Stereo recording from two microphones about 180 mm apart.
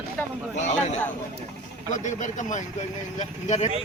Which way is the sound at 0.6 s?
40° left (ahead or behind).